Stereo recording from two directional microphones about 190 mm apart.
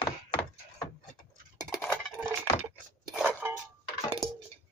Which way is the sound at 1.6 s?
5° left (ahead or behind).